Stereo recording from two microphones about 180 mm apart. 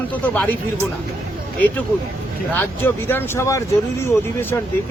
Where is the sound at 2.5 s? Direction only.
10° left (ahead or behind).